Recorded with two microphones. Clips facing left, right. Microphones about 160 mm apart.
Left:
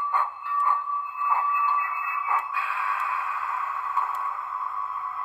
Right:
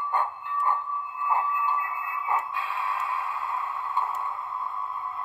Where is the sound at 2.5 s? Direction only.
20° right (ahead or behind).